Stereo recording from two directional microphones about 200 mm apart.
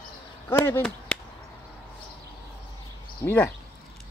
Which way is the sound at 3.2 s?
10° left (ahead or behind).